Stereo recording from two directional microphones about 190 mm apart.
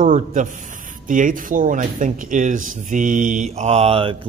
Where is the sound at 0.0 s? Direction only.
45° right (ahead or behind).